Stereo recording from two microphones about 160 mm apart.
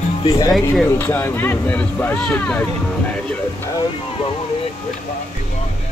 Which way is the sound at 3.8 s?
35° left (ahead or behind).